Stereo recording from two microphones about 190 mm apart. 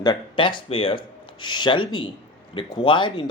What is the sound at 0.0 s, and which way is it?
Speech, 25° left (ahead or behind).